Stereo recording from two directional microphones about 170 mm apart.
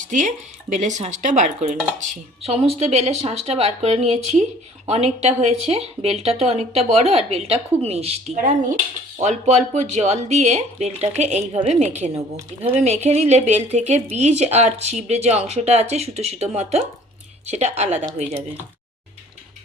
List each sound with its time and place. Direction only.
0.0 s speech: 45° right (ahead or behind)